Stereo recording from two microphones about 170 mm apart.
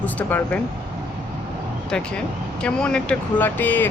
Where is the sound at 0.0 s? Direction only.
10° left (ahead or behind).